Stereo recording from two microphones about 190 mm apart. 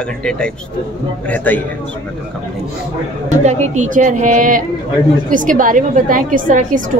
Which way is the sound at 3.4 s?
40° right (ahead or behind).